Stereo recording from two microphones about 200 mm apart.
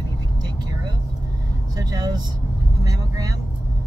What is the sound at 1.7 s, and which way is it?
Speech, 20° right (ahead or behind).